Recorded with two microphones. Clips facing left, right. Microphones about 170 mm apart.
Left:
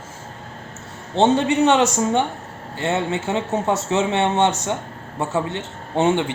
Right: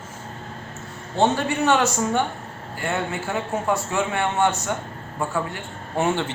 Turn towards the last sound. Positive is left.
turn(degrees=20)  # may be behind; listen again after turning